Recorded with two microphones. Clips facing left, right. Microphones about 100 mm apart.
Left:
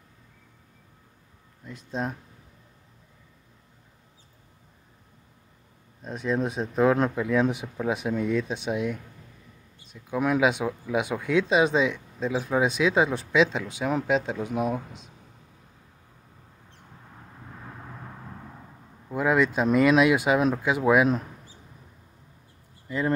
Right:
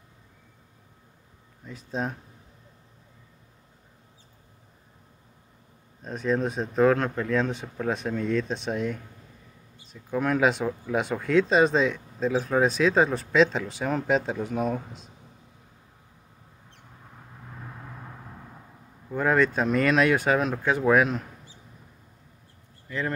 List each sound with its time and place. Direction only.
1.7 s speech: centre (ahead or behind)
6.0 s speech: 5° left (ahead or behind)
10.0 s speech: 5° left (ahead or behind)
19.0 s speech: 10° left (ahead or behind)
22.8 s speech: 20° left (ahead or behind)